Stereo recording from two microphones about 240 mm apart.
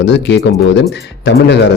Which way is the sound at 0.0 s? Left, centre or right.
Left.